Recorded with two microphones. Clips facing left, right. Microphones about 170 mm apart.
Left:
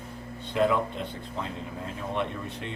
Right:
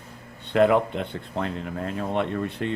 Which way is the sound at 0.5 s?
65° right (ahead or behind).